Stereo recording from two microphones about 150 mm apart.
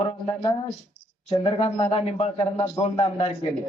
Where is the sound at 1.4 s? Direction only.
40° left (ahead or behind).